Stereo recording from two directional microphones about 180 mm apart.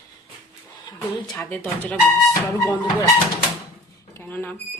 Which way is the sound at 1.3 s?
10° left (ahead or behind).